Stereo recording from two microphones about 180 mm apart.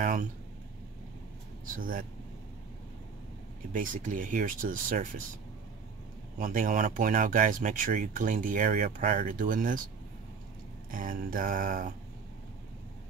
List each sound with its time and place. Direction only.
1.8 s speech: 50° right (ahead or behind)
3.7 s speech: 50° right (ahead or behind)
6.3 s speech: 50° right (ahead or behind)
10.9 s speech: 50° right (ahead or behind)